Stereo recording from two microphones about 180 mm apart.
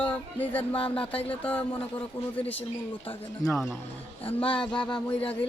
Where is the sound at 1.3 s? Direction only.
10° left (ahead or behind).